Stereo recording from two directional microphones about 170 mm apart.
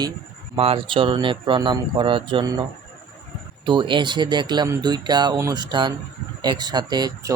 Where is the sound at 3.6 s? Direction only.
30° right (ahead or behind).